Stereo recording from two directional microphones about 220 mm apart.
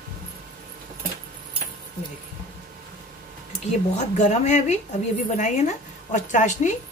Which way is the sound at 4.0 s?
30° left (ahead or behind).